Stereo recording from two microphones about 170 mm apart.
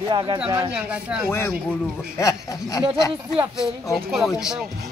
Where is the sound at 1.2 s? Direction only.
15° left (ahead or behind).